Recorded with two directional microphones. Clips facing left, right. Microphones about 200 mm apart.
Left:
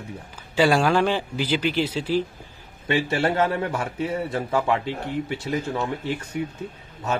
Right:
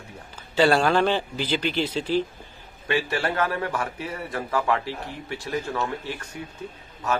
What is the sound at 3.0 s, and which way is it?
Speech, 25° left (ahead or behind).